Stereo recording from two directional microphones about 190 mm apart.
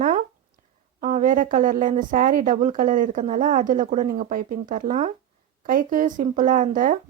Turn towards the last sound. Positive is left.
turn(degrees=-45)  # may be behind; listen again after turning